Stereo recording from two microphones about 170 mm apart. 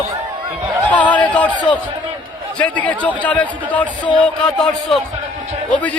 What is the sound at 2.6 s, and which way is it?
A man's voice, 10° left (ahead or behind).